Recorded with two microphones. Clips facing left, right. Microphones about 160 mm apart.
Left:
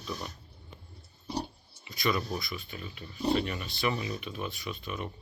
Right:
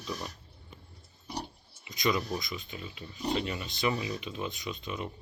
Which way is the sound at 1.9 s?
20° right (ahead or behind).